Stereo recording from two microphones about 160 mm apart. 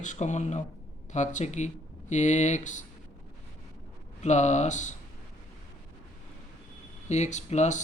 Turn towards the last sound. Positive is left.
turn(degrees=45)  # may be behind; listen again after turning